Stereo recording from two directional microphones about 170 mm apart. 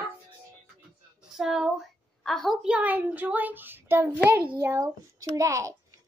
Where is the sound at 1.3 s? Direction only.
5° right (ahead or behind).